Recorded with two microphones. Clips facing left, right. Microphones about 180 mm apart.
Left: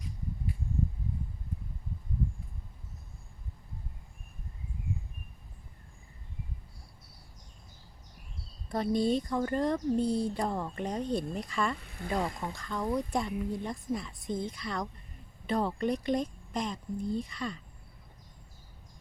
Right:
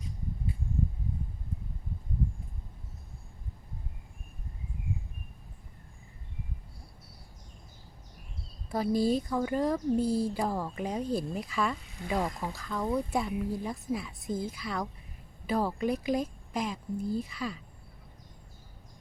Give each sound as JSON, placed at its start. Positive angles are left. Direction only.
{"t": 8.7, "sound": "speech", "side_deg": -5}
{"t": 11.8, "sound": "a sound", "side_deg": 55}
{"t": 12.0, "sound": "speech", "side_deg": -5}